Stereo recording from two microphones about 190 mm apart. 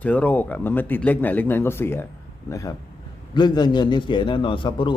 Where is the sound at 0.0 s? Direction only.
5° left (ahead or behind).